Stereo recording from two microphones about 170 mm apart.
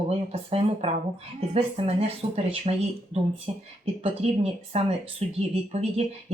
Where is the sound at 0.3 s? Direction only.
35° right (ahead or behind).